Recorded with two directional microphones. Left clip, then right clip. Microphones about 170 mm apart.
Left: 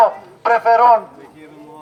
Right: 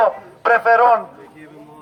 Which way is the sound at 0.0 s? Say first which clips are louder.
Left 2 dB; 15° right (ahead or behind).